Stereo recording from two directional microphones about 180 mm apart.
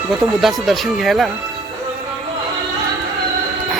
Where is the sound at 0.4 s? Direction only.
Centre (ahead or behind).